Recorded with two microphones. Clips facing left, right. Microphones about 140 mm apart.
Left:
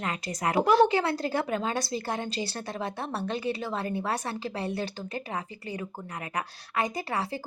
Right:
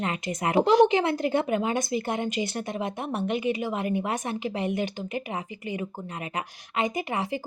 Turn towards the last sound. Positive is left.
turn(degrees=-20)  # may be behind; listen again after turning